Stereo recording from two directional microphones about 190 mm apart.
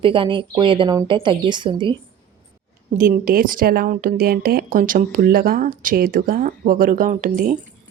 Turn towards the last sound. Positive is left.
turn(degrees=-45)  # may be behind; listen again after turning